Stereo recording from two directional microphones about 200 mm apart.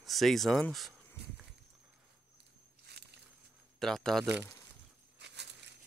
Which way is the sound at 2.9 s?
55° right (ahead or behind).